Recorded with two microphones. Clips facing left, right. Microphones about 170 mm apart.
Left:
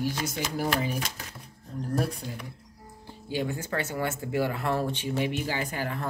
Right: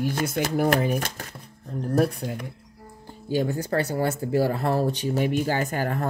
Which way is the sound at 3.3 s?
40° right (ahead or behind).